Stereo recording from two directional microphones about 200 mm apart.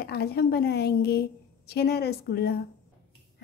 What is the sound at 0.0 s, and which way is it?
A woman's voice, 50° left (ahead or behind).